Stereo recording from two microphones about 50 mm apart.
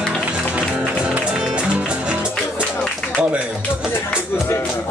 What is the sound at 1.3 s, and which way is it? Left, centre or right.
Music, centre.